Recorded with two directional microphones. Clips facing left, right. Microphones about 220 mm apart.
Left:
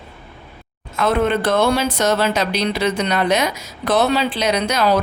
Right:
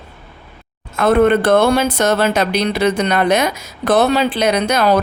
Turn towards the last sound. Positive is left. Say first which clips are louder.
# right 3 dB
turn(degrees=-55)  # may be behind; listen again after turning